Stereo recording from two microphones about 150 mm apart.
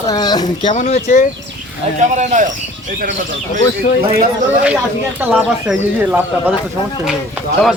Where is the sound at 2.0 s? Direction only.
55° right (ahead or behind).